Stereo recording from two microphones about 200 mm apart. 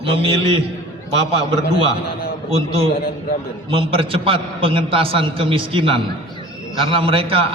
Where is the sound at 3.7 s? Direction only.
25° right (ahead or behind).